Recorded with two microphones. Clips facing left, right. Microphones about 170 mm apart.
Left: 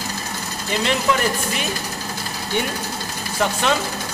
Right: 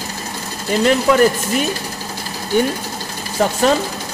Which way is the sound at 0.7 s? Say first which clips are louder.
Right 7 dB; 45° right (ahead or behind).